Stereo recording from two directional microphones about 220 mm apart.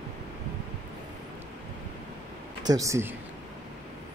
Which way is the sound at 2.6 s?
15° right (ahead or behind).